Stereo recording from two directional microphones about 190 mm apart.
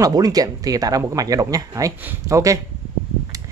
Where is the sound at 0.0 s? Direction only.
20° right (ahead or behind).